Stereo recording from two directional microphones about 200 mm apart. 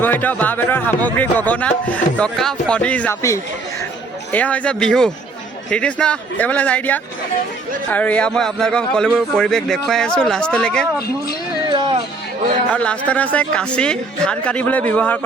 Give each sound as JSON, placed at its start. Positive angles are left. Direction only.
{"t": 0.0, "sound": "speech", "side_deg": 10}
{"t": 11.7, "sound": "a sound", "side_deg": -25}
{"t": 12.7, "sound": "speech", "side_deg": 5}